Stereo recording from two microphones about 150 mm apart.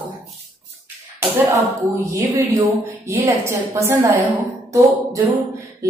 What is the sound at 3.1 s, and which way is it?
A woman's voice, 20° right (ahead or behind).